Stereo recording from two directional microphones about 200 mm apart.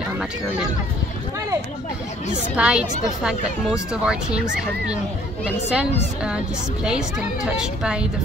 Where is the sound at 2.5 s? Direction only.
5° right (ahead or behind).